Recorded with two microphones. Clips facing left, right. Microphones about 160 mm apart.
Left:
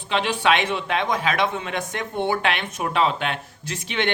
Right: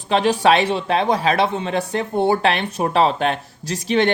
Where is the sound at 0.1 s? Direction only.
40° right (ahead or behind).